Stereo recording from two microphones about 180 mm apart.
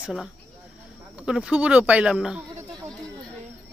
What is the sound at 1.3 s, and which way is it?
A woman's voice, 5° right (ahead or behind).